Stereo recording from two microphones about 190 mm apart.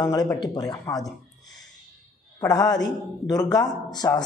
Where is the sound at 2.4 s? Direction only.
20° left (ahead or behind).